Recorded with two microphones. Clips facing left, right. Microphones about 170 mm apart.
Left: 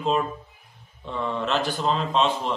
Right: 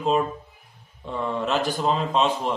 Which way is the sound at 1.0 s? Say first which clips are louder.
Right 1 dB; 10° right (ahead or behind).